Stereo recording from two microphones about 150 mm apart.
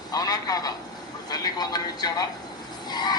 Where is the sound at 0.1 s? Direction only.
25° left (ahead or behind).